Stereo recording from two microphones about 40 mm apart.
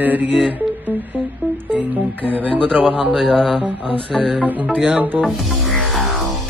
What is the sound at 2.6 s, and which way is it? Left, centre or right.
Speech, right.